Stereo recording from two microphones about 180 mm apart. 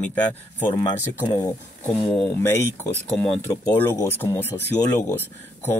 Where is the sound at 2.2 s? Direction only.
15° left (ahead or behind).